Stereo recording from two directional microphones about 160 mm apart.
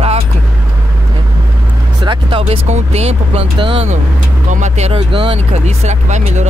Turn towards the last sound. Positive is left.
turn(degrees=-45)  # may be behind; listen again after turning